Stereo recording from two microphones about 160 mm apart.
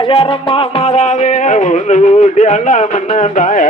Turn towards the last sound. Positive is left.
turn(degrees=55)  # may be behind; listen again after turning